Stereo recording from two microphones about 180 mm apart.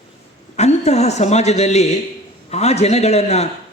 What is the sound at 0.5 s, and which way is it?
Speech, 40° left (ahead or behind).